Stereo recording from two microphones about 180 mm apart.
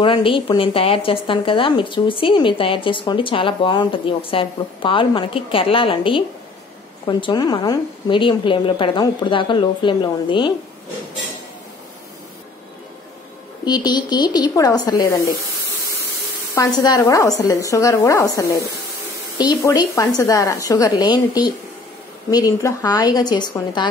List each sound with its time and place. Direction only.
0.0 s a woman's voice: 30° left (ahead or behind)
13.7 s a woman's voice: 25° left (ahead or behind)
16.5 s a woman's voice: 20° left (ahead or behind)